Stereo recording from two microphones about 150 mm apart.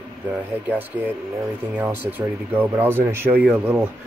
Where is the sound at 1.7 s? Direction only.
10° right (ahead or behind).